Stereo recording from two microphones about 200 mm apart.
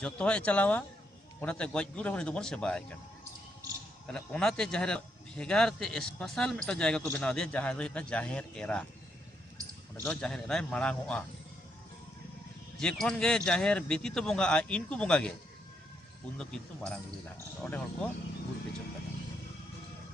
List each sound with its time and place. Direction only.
0.0 s a man's voice: 5° left (ahead or behind)
4.1 s a man's voice: 5° left (ahead or behind)
10.0 s a man's voice: 5° left (ahead or behind)
12.8 s a man's voice: 5° left (ahead or behind)
16.4 s a man's voice: 5° left (ahead or behind)